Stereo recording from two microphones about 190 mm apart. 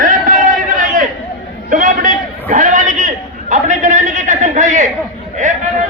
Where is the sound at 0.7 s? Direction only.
40° right (ahead or behind).